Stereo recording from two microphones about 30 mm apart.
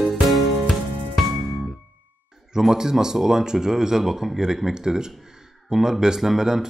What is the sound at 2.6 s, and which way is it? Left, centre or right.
Speech, centre.